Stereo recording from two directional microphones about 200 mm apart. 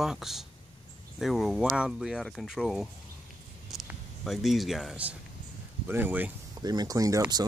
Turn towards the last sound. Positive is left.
turn(degrees=-20)  # may be behind; listen again after turning